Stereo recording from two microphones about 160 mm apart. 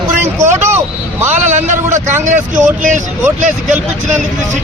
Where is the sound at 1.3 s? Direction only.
50° right (ahead or behind).